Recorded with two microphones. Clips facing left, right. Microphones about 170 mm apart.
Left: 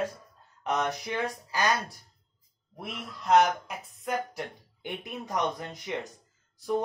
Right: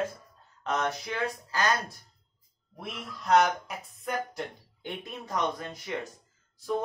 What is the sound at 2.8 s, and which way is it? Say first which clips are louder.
Speech: left 1 dB; centre (ahead or behind).